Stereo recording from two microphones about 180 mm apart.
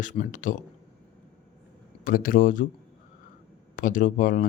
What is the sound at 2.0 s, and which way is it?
Speech, 50° left (ahead or behind).